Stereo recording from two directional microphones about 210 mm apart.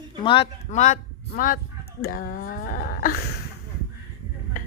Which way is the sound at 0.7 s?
35° left (ahead or behind).